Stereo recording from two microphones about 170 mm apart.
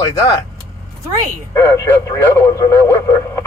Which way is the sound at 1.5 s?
15° left (ahead or behind).